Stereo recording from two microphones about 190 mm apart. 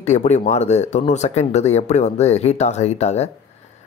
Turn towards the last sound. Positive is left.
turn(degrees=35)  # may be behind; listen again after turning